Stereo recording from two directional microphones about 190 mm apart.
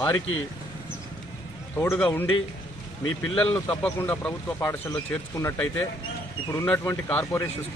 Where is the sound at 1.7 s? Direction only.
10° left (ahead or behind).